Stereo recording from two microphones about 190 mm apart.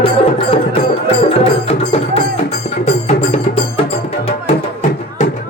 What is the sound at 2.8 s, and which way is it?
Music, 35° left (ahead or behind).